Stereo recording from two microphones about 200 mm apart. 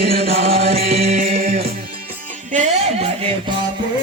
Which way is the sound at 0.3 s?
30° right (ahead or behind).